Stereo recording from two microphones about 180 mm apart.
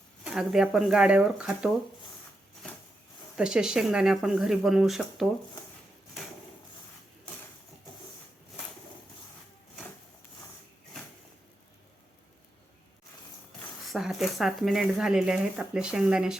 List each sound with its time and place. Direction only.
0.3 s speech: 5° right (ahead or behind)
3.3 s speech: 5° right (ahead or behind)
13.9 s speech: centre (ahead or behind)